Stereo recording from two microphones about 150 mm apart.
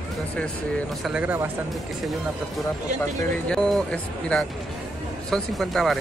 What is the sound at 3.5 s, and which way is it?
Speech, 5° left (ahead or behind).